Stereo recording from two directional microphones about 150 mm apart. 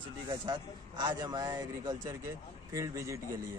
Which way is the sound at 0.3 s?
30° right (ahead or behind).